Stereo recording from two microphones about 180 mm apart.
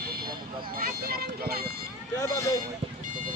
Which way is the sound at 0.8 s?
55° right (ahead or behind).